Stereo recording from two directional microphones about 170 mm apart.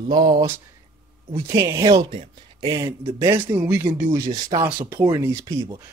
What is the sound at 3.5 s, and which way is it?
Speech, 10° right (ahead or behind).